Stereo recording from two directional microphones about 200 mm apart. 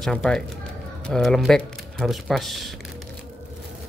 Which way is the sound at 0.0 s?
5° left (ahead or behind).